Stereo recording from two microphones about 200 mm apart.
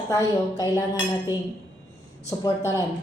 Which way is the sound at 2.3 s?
15° left (ahead or behind).